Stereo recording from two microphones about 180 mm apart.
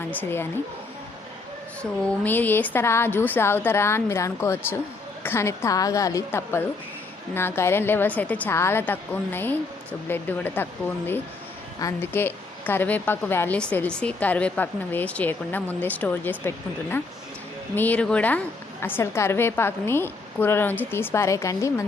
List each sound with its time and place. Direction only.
0.1 s a woman's voice: 10° left (ahead or behind)
1.8 s a woman's voice: 10° left (ahead or behind)